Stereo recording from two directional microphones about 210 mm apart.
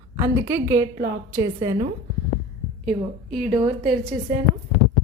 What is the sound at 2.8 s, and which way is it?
Speech, centre (ahead or behind).